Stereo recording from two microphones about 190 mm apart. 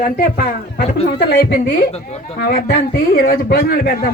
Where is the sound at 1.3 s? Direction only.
60° left (ahead or behind).